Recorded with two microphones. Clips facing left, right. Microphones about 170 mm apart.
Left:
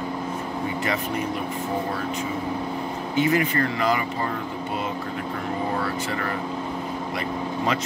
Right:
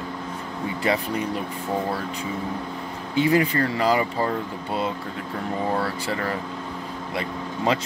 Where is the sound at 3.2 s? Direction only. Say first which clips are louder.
Right 2 dB; 30° right (ahead or behind).